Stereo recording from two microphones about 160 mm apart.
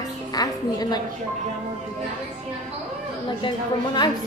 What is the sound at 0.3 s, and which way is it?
Music, 25° left (ahead or behind).